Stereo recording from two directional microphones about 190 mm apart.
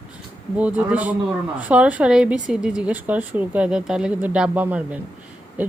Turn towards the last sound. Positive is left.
turn(degrees=-10)  # may be behind; listen again after turning